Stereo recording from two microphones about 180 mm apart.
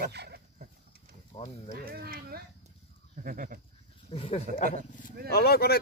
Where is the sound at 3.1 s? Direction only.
50° right (ahead or behind).